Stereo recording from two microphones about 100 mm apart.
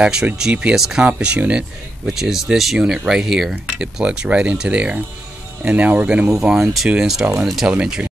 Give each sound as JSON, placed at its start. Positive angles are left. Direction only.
{"t": 0.0, "sound": "speech", "side_deg": -10}